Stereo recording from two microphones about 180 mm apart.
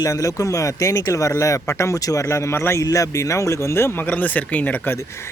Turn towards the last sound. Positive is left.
turn(degrees=15)  # may be behind; listen again after turning